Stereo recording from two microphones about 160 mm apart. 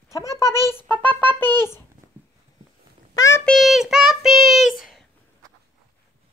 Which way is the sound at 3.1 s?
20° left (ahead or behind).